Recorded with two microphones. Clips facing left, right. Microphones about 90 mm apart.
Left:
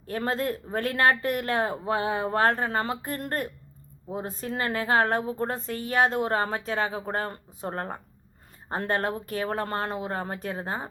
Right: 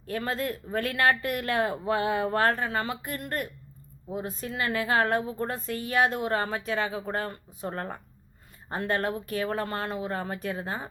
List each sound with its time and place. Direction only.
0.1 s a woman's voice: 30° left (ahead or behind)